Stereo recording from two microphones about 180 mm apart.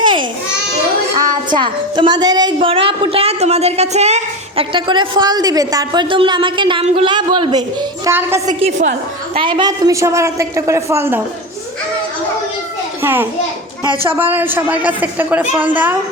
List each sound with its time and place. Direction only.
0.0 s babbling: 25° right (ahead or behind)
1.2 s a woman's voice: 25° right (ahead or behind)
8.0 s a woman's voice: 15° right (ahead or behind)
8.4 s a woman's voice: 45° right (ahead or behind)
9.4 s a woman's voice: 25° right (ahead or behind)
13.0 s a child's voice: 10° right (ahead or behind)